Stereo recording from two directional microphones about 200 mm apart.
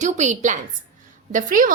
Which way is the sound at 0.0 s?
35° right (ahead or behind).